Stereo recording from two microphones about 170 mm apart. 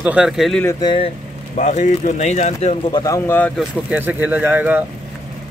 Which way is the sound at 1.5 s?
45° left (ahead or behind).